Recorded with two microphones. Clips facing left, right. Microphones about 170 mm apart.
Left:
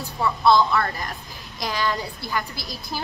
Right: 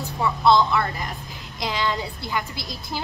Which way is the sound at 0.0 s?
20° right (ahead or behind).